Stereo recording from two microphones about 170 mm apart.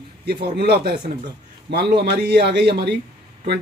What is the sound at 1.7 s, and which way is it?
Speech, 75° right (ahead or behind).